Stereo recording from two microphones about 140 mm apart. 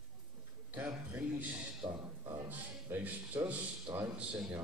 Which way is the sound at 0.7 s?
10° right (ahead or behind).